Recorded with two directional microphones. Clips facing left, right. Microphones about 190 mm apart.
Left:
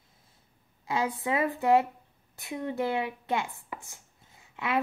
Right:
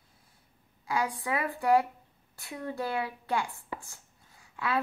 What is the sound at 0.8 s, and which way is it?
Speech, 25° left (ahead or behind).